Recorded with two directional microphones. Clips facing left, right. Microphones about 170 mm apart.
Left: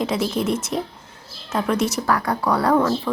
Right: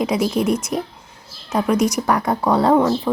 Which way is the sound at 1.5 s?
15° right (ahead or behind).